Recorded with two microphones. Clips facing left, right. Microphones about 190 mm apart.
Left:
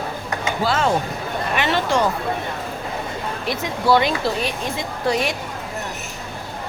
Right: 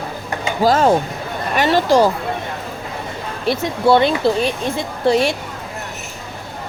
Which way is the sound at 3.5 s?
30° right (ahead or behind).